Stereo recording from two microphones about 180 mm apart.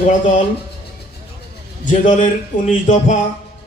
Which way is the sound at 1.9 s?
45° left (ahead or behind).